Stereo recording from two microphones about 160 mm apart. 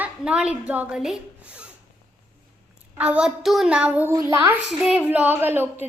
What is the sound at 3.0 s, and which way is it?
A woman's voice, 5° right (ahead or behind).